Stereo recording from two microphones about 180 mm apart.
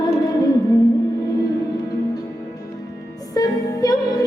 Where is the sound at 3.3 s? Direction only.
20° left (ahead or behind).